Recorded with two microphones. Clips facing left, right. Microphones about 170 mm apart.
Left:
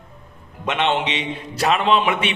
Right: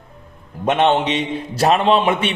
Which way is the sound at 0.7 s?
45° right (ahead or behind).